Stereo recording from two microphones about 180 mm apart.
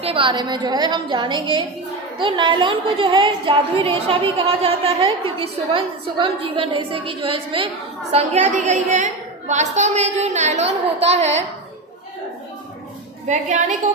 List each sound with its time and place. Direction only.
0.0 s a woman's voice: 30° right (ahead or behind)
13.2 s a woman's voice: 40° right (ahead or behind)